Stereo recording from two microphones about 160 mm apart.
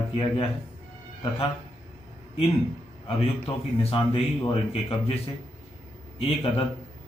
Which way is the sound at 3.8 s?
35° left (ahead or behind).